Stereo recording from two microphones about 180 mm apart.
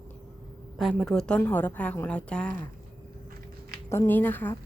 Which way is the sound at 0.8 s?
Centre (ahead or behind).